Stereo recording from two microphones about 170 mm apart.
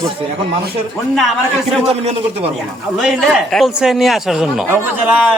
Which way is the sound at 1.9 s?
35° right (ahead or behind).